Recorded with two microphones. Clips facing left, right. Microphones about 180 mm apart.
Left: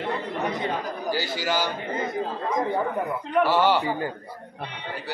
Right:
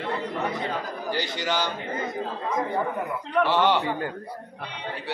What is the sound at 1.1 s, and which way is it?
Speech, 5° left (ahead or behind).